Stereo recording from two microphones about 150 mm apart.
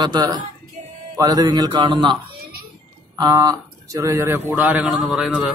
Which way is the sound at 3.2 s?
25° right (ahead or behind).